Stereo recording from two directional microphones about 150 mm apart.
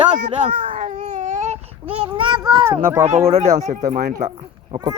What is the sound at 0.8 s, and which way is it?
Baby cry, 55° right (ahead or behind).